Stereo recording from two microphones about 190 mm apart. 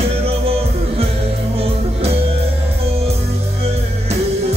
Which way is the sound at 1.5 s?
30° right (ahead or behind).